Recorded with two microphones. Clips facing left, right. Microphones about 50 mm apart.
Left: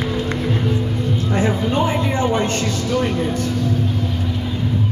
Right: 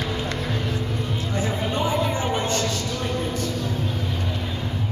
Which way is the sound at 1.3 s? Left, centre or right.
Left.